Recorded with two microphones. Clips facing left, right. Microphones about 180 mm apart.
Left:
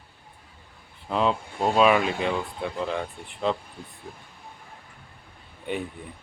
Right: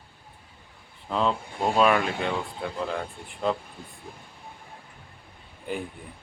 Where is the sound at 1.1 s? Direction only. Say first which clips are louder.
Left 2 dB; 5° left (ahead or behind).